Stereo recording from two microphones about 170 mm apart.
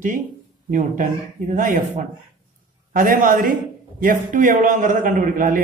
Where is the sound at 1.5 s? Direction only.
50° right (ahead or behind).